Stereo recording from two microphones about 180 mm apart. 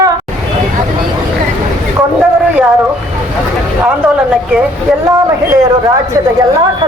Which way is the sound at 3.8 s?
5° right (ahead or behind).